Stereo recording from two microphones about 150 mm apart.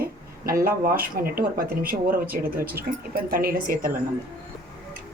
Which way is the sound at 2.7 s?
85° right.